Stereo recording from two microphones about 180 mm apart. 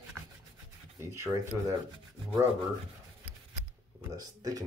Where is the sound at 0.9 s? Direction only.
15° right (ahead or behind).